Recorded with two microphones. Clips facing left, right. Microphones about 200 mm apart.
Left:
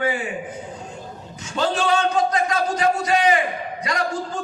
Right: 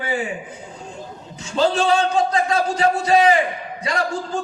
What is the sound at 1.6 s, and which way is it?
A man's voice, 30° right (ahead or behind).